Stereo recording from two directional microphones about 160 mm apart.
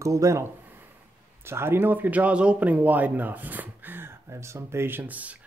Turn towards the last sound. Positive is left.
turn(degrees=-10)  # may be behind; listen again after turning